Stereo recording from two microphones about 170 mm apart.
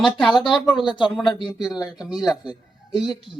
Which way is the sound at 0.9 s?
25° left (ahead or behind).